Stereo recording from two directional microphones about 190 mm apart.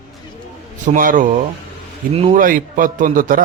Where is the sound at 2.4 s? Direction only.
45° right (ahead or behind).